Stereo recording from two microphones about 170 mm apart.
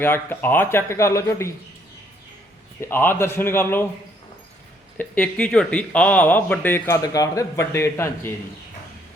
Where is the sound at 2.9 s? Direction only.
15° left (ahead or behind).